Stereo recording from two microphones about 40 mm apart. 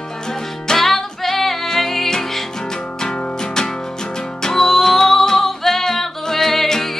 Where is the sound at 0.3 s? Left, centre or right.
Centre.